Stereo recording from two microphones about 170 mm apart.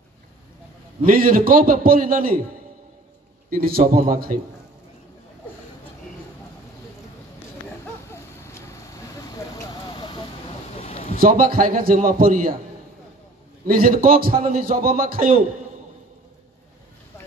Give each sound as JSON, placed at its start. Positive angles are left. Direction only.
{"t": 1.0, "sound": "a man's voice", "side_deg": -60}
{"t": 3.4, "sound": "a man's voice", "side_deg": -60}
{"t": 7.8, "sound": "vehicle", "side_deg": 15}
{"t": 10.8, "sound": "a sound", "side_deg": 35}
{"t": 11.1, "sound": "a man's voice", "side_deg": -55}
{"t": 13.7, "sound": "a man's voice", "side_deg": -55}